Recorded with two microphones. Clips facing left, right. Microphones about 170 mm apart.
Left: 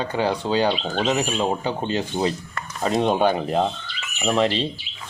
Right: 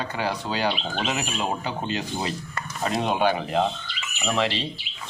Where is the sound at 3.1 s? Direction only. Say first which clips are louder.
Left 3 dB; 40° left (ahead or behind).